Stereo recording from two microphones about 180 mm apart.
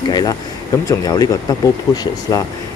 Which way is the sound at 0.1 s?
25° left (ahead or behind).